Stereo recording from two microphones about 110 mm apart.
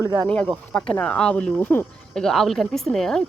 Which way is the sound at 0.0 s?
35° right (ahead or behind).